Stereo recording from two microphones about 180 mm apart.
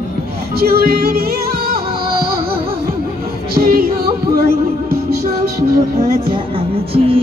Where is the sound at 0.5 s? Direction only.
60° right (ahead or behind).